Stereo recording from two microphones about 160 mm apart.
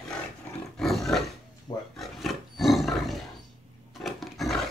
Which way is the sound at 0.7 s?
Centre (ahead or behind).